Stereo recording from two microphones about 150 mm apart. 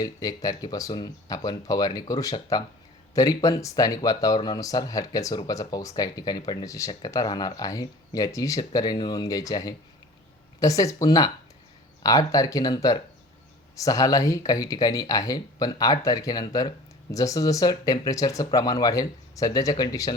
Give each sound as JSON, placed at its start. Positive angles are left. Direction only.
{"t": 0.0, "sound": "speech", "side_deg": 25}